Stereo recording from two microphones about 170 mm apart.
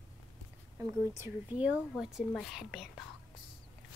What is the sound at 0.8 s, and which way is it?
Speech, 15° right (ahead or behind).